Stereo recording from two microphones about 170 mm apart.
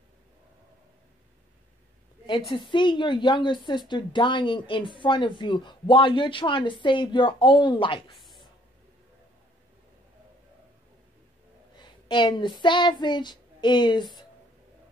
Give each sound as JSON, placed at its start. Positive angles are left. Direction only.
{"t": 2.5, "sound": "a woman's voice", "side_deg": 30}
{"t": 8.2, "sound": "a sound", "side_deg": 0}
{"t": 11.8, "sound": "child singing", "side_deg": 30}